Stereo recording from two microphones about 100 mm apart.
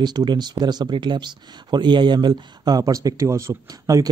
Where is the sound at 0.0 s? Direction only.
45° right (ahead or behind).